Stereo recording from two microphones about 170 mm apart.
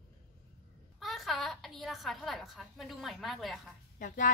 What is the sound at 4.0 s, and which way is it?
Speech, 50° left (ahead or behind).